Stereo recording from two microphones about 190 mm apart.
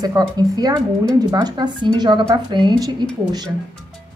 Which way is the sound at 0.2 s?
20° right (ahead or behind).